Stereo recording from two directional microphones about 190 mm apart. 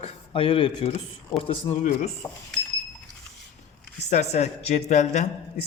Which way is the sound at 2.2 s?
15° left (ahead or behind).